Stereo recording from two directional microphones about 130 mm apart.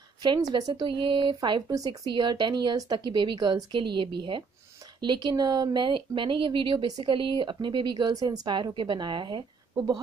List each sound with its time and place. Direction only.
0.2 s speech: 35° right (ahead or behind)